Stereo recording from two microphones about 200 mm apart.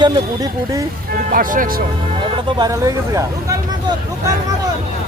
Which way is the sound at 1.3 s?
45° right (ahead or behind).